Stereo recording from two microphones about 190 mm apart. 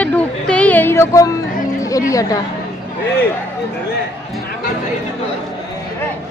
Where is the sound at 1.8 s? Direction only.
15° left (ahead or behind).